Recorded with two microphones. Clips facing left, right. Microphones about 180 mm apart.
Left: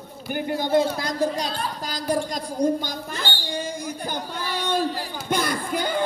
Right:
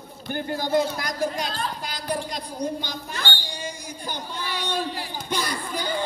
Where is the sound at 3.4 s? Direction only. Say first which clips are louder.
Left 6 dB; 55° left (ahead or behind).